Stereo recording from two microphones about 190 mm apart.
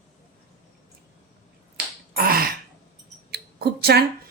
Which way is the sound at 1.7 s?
50° right (ahead or behind).